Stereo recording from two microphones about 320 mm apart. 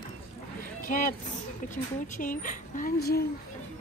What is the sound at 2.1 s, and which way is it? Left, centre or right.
A woman's voice, left.